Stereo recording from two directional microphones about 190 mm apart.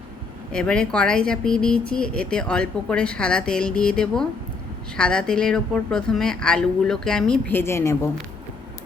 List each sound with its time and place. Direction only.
0.5 s speech: 5° left (ahead or behind)